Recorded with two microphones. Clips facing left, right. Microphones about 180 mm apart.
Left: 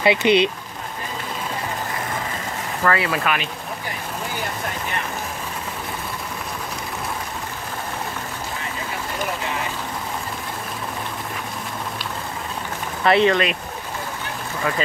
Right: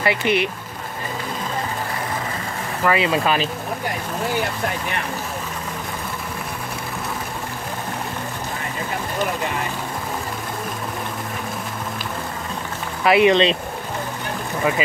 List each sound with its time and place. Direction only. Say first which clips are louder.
0.0 s speech: left 3 dB; 20° left (ahead or behind)
2.8 s speech: right 2 dB; 20° right (ahead or behind)
13.0 s speech: right 1 dB; 10° right (ahead or behind)
13.3 s speech: right 4 dB; 25° right (ahead or behind)